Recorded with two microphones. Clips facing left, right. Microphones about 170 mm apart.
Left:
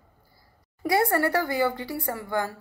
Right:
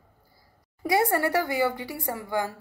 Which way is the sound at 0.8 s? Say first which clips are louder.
Left 1 dB; 15° right (ahead or behind).